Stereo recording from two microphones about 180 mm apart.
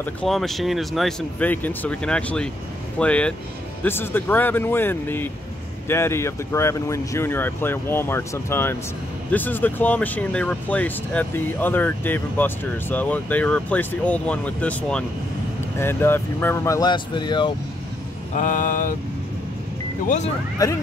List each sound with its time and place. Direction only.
0.0 s speech: 5° left (ahead or behind); by 17.5 s 25° left (ahead or behind)
18.3 s mantra: 45° left (ahead or behind)
20.6 s speech: 20° left (ahead or behind)